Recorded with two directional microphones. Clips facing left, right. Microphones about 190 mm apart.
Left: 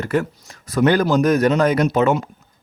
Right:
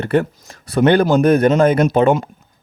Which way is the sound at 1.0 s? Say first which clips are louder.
Right 3 dB; 55° right (ahead or behind).